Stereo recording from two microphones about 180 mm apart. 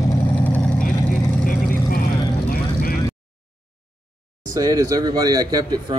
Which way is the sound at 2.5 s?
55° left (ahead or behind).